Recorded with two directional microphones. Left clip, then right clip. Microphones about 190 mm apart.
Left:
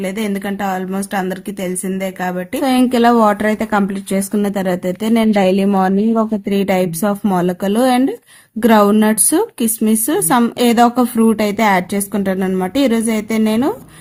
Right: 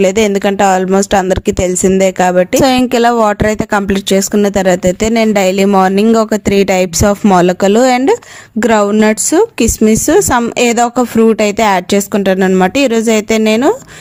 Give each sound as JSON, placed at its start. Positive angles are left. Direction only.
{"t": 0.0, "sound": "speech", "side_deg": -45}